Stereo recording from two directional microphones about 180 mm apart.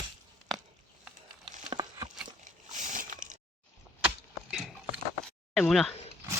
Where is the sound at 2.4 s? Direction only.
45° right (ahead or behind).